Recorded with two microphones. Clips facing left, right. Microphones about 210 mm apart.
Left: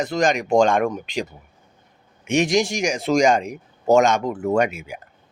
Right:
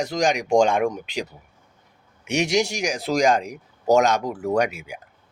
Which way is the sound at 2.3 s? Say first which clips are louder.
Left 3 dB; 10° right (ahead or behind).